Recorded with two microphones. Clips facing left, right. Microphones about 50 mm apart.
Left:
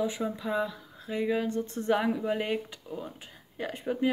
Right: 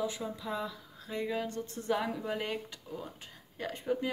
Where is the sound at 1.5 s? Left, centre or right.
Left.